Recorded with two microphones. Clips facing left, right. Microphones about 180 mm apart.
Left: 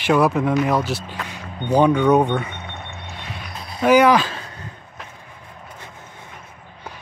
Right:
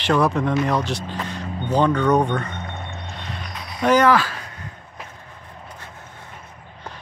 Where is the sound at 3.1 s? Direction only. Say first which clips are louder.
Right 1 dB; 5° left (ahead or behind).